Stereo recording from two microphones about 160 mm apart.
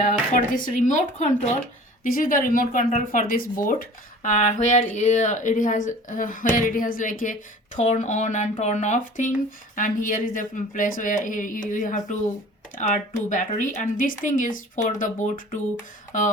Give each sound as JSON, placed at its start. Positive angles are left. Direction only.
{"t": 0.0, "sound": "speech", "side_deg": 55}
{"t": 2.0, "sound": "speech", "side_deg": 60}